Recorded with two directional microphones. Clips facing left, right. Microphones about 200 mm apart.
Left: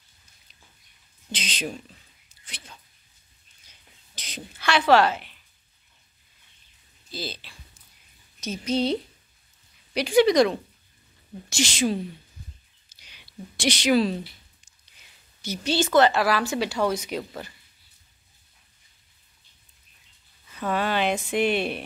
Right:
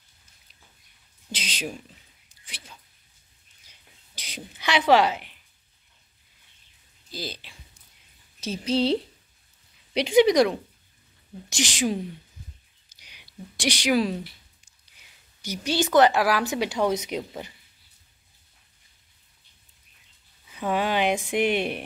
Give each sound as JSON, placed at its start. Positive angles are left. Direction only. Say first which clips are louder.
{"t": 1.3, "sound": "speech", "louder": "left 1 dB", "side_deg": -10}
{"t": 2.4, "sound": "a sound", "louder": "left 1 dB", "side_deg": -5}
{"t": 4.1, "sound": "a sound", "louder": "left 1 dB", "side_deg": -10}
{"t": 7.1, "sound": "speech", "louder": "left 1 dB", "side_deg": -15}
{"t": 8.4, "sound": "a woman's voice", "louder": "right 1 dB", "side_deg": -30}
{"t": 9.9, "sound": "speech", "louder": "even", "side_deg": -20}
{"t": 12.9, "sound": "a sound", "louder": "left 3 dB", "side_deg": -15}
{"t": 15.4, "sound": "speech", "louder": "left 1 dB", "side_deg": -15}
{"t": 20.4, "sound": "speech", "louder": "right 1 dB", "side_deg": -15}